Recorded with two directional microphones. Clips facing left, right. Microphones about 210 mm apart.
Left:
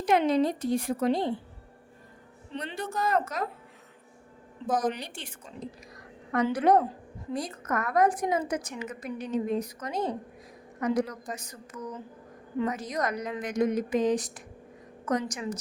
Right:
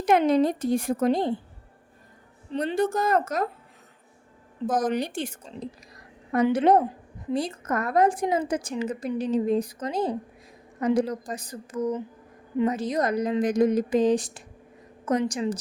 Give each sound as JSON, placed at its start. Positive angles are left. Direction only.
{"t": 0.0, "sound": "a woman's voice", "side_deg": -50}
{"t": 2.5, "sound": "a woman's voice", "side_deg": -40}
{"t": 4.7, "sound": "a woman's voice", "side_deg": -45}
{"t": 6.3, "sound": "a woman's voice", "side_deg": -25}